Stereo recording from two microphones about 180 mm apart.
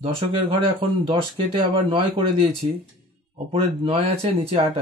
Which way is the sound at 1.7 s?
30° right (ahead or behind).